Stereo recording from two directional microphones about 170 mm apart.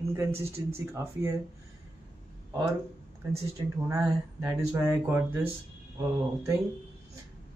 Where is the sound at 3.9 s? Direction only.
20° right (ahead or behind).